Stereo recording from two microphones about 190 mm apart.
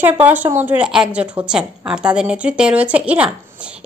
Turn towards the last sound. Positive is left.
turn(degrees=-5)  # may be behind; listen again after turning